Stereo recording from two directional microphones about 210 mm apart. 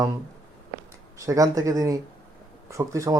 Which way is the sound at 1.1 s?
15° right (ahead or behind).